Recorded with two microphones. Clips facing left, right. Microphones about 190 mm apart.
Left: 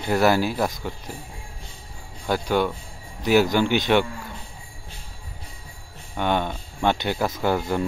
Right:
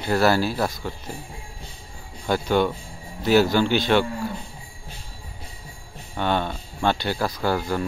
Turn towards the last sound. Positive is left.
turn(degrees=20)  # may be behind; listen again after turning